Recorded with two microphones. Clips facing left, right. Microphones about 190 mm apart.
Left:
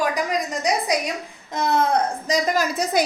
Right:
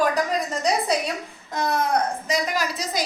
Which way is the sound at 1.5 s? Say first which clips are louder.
Left 2 dB; 25° left (ahead or behind).